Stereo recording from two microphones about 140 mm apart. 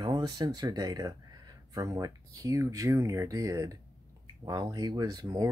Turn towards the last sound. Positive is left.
turn(degrees=-25)  # may be behind; listen again after turning